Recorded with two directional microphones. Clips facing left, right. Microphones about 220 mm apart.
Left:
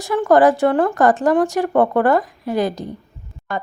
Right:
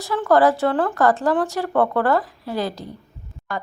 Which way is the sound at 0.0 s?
15° left (ahead or behind).